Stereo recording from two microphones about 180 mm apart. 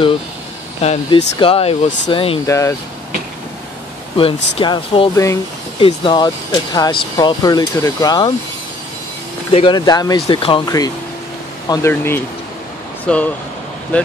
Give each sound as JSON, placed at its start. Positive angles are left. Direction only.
{"t": 0.8, "sound": "speech", "side_deg": 30}
{"t": 2.4, "sound": "speech", "side_deg": 15}
{"t": 4.2, "sound": "speech", "side_deg": 30}
{"t": 5.1, "sound": "speech", "side_deg": 15}
{"t": 5.8, "sound": "speech", "side_deg": 30}
{"t": 9.5, "sound": "speech", "side_deg": 30}